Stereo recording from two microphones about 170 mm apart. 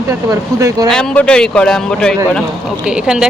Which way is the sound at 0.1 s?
20° right (ahead or behind).